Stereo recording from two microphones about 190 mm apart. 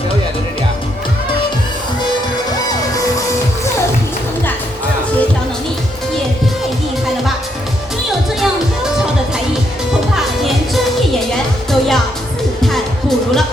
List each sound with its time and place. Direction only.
11.7 s music: centre (ahead or behind)